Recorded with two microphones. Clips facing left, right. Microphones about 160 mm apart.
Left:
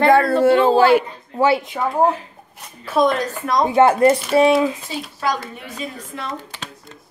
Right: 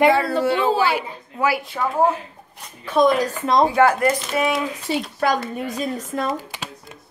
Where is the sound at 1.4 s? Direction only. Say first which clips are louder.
Left 5 dB; 25° left (ahead or behind).